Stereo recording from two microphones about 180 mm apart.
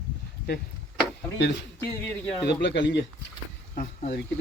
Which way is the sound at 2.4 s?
75° left (ahead or behind).